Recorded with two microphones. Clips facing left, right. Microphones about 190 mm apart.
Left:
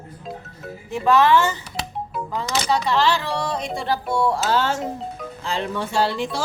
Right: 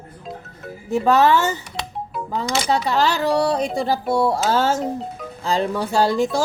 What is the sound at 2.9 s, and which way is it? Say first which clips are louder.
Speech: right 2 dB; 40° right (ahead or behind).